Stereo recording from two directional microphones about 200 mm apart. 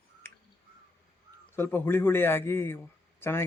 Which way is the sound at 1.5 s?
10° left (ahead or behind).